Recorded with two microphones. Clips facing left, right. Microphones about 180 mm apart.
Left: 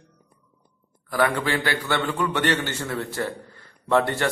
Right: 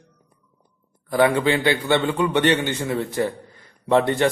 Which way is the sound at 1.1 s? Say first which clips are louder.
Right 5 dB; 20° right (ahead or behind).